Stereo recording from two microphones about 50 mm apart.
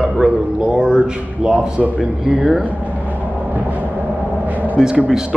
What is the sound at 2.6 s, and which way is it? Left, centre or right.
Vehicle, right.